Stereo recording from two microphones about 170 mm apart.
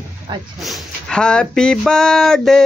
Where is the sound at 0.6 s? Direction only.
Centre (ahead or behind).